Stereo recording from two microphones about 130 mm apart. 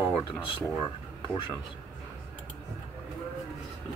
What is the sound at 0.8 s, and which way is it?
Speech, 35° left (ahead or behind).